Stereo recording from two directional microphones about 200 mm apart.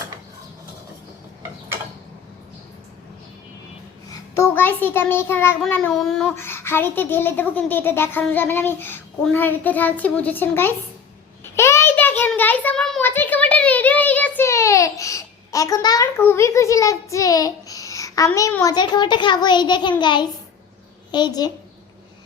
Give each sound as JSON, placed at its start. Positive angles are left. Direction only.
{"t": 4.1, "sound": "a child's voice", "side_deg": 15}
{"t": 11.5, "sound": "child singing", "side_deg": 15}
{"t": 21.1, "sound": "a child's voice", "side_deg": 20}